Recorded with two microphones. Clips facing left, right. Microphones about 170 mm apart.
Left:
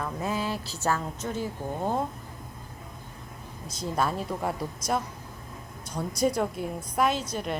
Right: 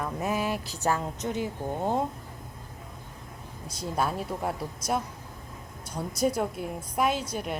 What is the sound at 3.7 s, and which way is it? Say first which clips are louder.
Speech: left 1 dB; 10° right (ahead or behind).